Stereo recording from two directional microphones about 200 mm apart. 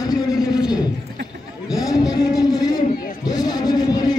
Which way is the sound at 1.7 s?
15° left (ahead or behind).